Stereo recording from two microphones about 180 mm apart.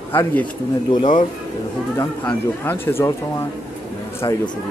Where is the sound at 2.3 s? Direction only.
10° left (ahead or behind).